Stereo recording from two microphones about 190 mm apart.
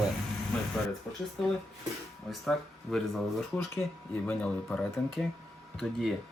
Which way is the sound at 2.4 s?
Centre (ahead or behind).